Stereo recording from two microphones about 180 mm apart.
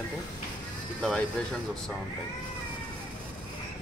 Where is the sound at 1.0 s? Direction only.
5° left (ahead or behind).